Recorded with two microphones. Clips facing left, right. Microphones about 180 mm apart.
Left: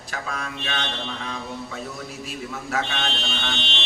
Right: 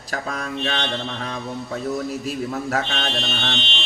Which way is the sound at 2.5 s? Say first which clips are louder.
Even; 40° right (ahead or behind).